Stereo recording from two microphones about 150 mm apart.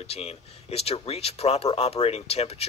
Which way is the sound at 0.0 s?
45° left (ahead or behind).